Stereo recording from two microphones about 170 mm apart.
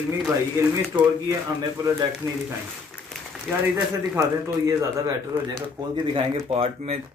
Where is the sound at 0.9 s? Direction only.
20° right (ahead or behind).